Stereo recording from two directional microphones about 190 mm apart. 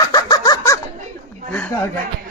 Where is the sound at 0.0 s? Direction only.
20° left (ahead or behind).